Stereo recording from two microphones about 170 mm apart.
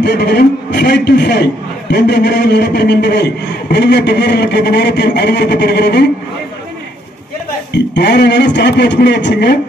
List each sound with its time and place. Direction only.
0.0 s a man's voice: 80° left
7.7 s a man's voice: 90° left